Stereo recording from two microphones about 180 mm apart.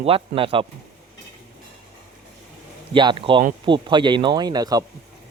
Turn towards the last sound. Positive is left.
turn(degrees=-20)  # may be behind; listen again after turning